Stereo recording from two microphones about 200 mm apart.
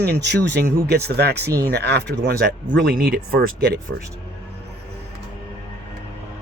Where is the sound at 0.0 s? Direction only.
55° right (ahead or behind).